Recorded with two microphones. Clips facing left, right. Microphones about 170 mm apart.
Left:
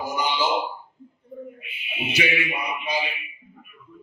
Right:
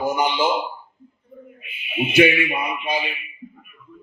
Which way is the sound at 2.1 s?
55° right (ahead or behind).